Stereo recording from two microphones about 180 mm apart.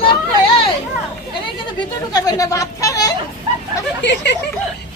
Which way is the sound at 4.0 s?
75° left (ahead or behind).